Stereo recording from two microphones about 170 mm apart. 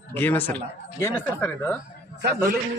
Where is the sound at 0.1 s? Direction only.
10° left (ahead or behind).